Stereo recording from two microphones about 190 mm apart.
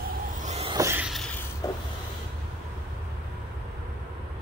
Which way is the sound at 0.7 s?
15° right (ahead or behind).